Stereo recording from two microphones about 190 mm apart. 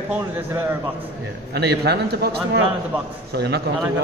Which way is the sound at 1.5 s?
60° right (ahead or behind).